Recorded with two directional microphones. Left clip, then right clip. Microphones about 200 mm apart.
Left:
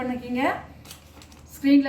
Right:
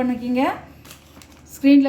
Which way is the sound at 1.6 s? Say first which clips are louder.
Right 5 dB; 50° right (ahead or behind).